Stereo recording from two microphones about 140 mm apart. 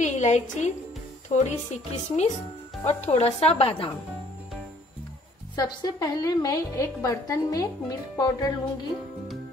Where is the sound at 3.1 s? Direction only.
50° left (ahead or behind).